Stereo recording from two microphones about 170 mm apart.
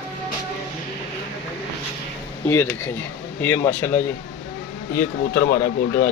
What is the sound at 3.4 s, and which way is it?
Speech, 10° left (ahead or behind).